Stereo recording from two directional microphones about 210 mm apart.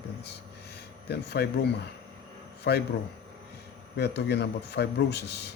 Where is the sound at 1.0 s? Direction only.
50° left (ahead or behind).